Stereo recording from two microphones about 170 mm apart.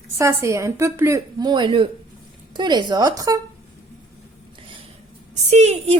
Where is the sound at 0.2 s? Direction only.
15° right (ahead or behind).